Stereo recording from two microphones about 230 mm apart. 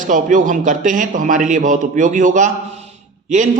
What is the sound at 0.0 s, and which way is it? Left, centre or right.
A man's voice, right.